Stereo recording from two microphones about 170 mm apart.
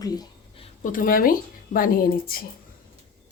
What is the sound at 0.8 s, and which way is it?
Speech, 55° left (ahead or behind).